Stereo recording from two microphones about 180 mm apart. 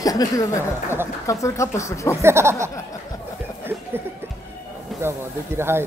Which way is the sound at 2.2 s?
15° right (ahead or behind).